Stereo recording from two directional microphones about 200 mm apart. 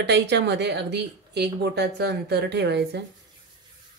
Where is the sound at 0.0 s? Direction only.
60° right (ahead or behind).